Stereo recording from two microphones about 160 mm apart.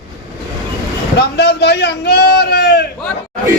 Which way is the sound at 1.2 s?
90° left.